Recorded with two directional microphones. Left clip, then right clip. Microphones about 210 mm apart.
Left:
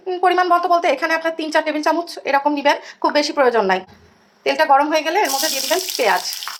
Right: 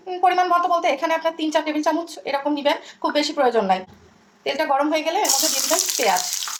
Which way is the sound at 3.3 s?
15° left (ahead or behind).